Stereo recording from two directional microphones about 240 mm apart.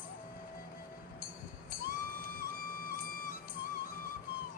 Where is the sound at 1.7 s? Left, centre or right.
Left.